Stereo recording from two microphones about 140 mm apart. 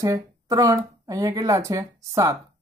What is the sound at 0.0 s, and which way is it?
Speech, 25° right (ahead or behind).